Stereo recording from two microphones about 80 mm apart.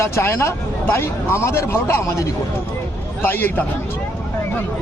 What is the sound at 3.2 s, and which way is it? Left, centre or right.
Speech, left.